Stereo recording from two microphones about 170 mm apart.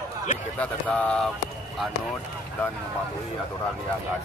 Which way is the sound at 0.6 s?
5° left (ahead or behind).